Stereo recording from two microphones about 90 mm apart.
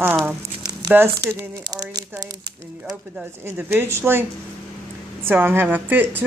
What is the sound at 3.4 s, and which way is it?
Speech, 25° right (ahead or behind).